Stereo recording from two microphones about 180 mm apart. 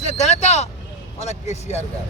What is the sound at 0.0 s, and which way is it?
Speech, 40° left (ahead or behind).